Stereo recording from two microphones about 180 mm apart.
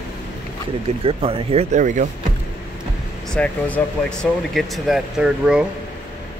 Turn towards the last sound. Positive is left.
turn(degrees=-5)  # may be behind; listen again after turning